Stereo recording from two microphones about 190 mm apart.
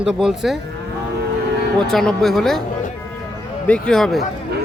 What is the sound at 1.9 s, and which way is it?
Speech, centre (ahead or behind).